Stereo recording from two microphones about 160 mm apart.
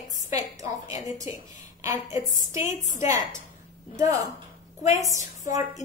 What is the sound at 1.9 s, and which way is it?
Speech, 55° left (ahead or behind).